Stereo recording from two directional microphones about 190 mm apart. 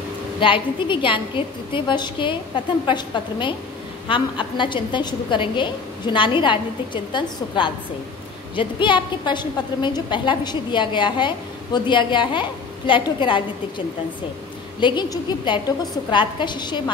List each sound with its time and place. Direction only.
0.4 s a woman's voice: 25° left (ahead or behind)